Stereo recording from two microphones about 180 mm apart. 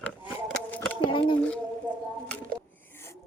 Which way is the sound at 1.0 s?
30° left (ahead or behind).